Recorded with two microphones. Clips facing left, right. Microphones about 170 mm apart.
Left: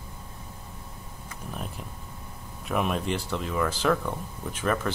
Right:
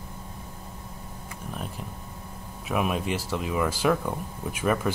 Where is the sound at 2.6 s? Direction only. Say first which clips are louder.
Even; 5° right (ahead or behind).